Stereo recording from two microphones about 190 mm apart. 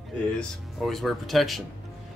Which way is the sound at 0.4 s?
Centre (ahead or behind).